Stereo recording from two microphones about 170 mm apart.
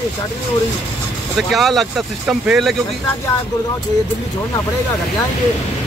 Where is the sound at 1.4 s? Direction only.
Centre (ahead or behind).